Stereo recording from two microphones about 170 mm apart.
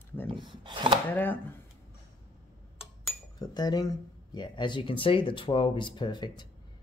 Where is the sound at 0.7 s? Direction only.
25° right (ahead or behind).